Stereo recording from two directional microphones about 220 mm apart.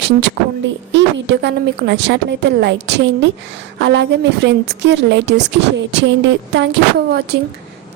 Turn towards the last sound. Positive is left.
turn(degrees=-50)  # may be behind; listen again after turning